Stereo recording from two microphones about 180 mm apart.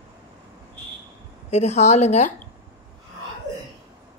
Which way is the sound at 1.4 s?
40° left (ahead or behind).